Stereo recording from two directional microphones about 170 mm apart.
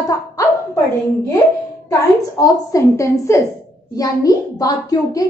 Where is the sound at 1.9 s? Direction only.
20° left (ahead or behind).